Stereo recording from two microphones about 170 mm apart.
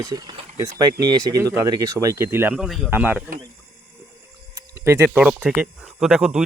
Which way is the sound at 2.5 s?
Centre (ahead or behind).